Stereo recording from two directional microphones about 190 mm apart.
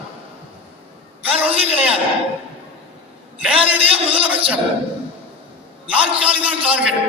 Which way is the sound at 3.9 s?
30° right (ahead or behind).